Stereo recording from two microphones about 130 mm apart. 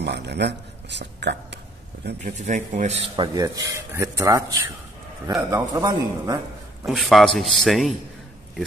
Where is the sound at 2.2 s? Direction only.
70° right (ahead or behind).